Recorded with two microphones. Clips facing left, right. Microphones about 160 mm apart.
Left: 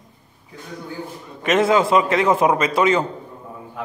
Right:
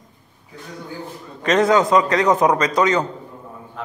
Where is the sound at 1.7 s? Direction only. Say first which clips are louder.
Right 1 dB; 25° left (ahead or behind).